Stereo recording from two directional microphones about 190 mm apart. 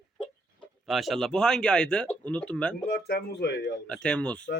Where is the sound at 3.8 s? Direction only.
5° left (ahead or behind).